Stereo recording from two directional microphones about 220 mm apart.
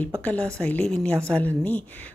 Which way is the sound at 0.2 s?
5° left (ahead or behind).